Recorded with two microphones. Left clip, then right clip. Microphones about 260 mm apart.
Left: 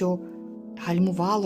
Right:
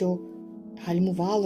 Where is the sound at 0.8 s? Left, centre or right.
Left.